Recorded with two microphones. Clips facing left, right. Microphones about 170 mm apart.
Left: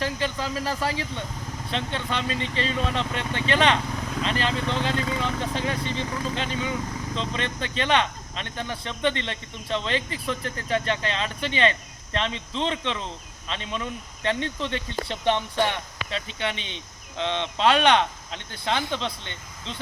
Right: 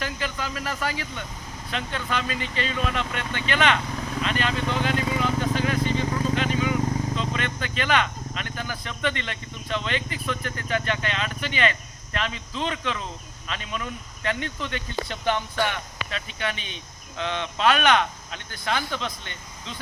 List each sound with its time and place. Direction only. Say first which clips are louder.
0.0 s speech: left 3 dB; 30° left (ahead or behind)